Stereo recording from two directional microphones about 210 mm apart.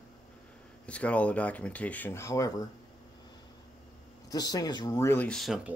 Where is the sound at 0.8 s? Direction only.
5° left (ahead or behind).